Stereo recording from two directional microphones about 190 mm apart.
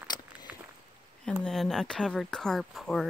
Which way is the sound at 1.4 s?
Centre (ahead or behind).